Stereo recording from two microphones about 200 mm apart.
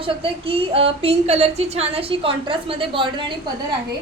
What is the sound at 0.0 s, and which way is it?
Speech, 25° right (ahead or behind).